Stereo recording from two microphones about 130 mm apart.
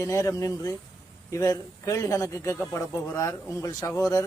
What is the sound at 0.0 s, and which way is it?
A man's voice, 25° left (ahead or behind).